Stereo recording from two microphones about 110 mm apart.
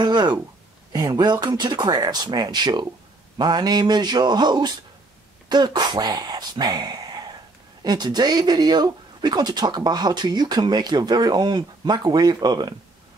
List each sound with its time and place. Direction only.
0.0 s speech: 40° right (ahead or behind)